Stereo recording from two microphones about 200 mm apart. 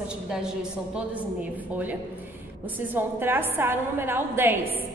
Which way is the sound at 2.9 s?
10° right (ahead or behind).